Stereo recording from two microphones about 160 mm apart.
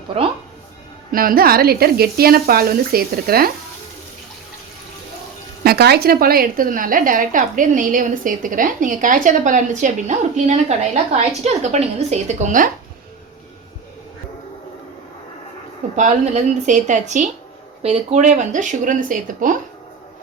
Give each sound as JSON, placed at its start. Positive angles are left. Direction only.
{"t": 1.1, "sound": "speech", "side_deg": -65}
{"t": 5.6, "sound": "a woman's voice", "side_deg": -85}
{"t": 16.0, "sound": "speech", "side_deg": -45}